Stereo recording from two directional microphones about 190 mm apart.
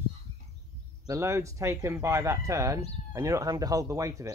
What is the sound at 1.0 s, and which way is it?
Speech, 15° right (ahead or behind).